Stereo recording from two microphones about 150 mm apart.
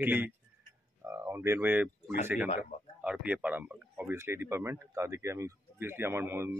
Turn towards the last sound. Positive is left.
turn(degrees=-15)  # may be behind; listen again after turning